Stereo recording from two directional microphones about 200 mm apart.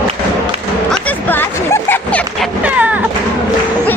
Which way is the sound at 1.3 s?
10° left (ahead or behind).